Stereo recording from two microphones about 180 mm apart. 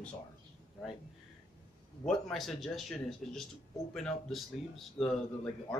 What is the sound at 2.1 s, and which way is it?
Speech, centre (ahead or behind).